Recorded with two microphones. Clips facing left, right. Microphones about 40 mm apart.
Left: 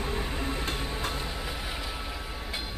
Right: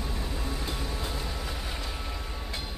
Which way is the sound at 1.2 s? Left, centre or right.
Centre.